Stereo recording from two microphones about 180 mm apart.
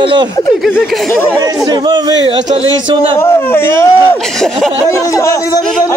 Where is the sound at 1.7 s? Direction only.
25° right (ahead or behind).